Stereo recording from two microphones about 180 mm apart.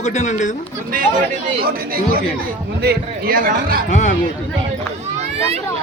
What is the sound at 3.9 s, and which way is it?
Speech, 45° left (ahead or behind).